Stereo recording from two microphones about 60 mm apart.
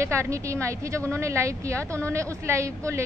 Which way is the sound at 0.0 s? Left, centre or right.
Right.